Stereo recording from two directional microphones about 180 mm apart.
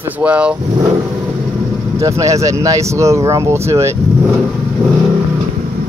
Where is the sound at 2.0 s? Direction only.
15° right (ahead or behind).